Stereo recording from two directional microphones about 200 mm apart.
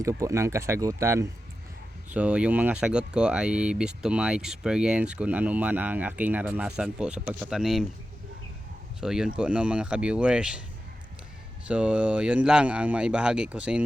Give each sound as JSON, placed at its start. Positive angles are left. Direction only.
{"t": 0.0, "sound": "speech", "side_deg": -15}
{"t": 9.0, "sound": "speech", "side_deg": -5}
{"t": 11.7, "sound": "speech", "side_deg": -5}